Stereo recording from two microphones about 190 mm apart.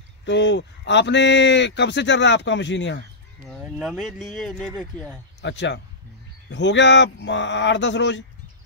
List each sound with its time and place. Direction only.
0.2 s speech: 70° left (ahead or behind)
3.6 s speech: 5° right (ahead or behind)
5.4 s speech: 70° left (ahead or behind)